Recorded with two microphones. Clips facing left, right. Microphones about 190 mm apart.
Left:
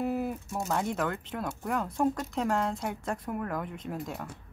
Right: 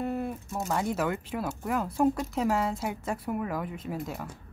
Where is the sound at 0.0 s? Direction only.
5° left (ahead or behind).